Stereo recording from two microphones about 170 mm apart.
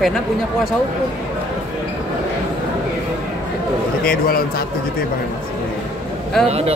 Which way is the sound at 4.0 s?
60° left (ahead or behind).